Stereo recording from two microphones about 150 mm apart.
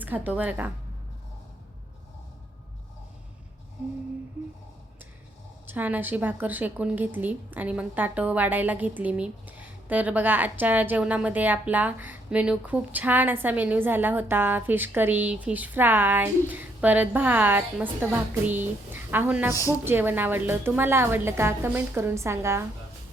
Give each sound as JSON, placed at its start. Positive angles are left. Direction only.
{"t": 0.0, "sound": "a woman's voice", "side_deg": -10}
{"t": 5.6, "sound": "a woman's voice", "side_deg": -10}